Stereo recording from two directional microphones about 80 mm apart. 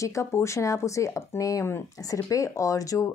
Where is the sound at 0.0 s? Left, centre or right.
Left.